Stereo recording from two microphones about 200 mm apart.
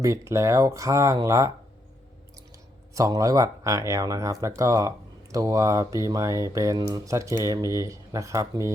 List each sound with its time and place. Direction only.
0.0 s speech: 15° right (ahead or behind)
2.9 s speech: 15° right (ahead or behind)